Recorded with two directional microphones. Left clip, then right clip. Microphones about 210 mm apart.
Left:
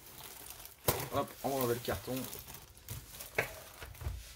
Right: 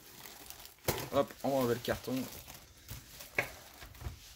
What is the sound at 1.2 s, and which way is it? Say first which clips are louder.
Speech: right 9 dB; 40° right (ahead or behind).